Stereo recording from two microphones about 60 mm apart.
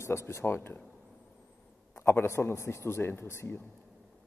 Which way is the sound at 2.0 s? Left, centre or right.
Left.